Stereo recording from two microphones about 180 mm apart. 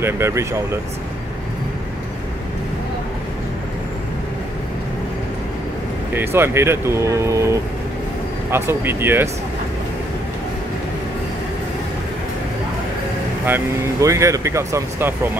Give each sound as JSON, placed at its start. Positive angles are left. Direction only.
{"t": 0.0, "sound": "speech", "side_deg": -15}
{"t": 6.1, "sound": "speech", "side_deg": -15}
{"t": 14.0, "sound": "speech", "side_deg": -15}